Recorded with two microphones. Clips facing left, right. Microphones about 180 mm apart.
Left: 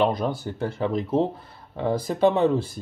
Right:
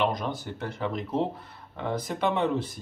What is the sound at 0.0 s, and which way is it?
Speech, 30° left (ahead or behind).